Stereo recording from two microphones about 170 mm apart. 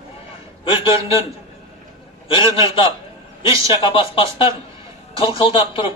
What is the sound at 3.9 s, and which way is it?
Speech, 30° left (ahead or behind).